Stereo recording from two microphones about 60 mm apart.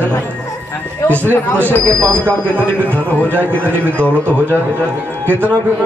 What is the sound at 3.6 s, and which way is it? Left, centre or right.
Speech, right.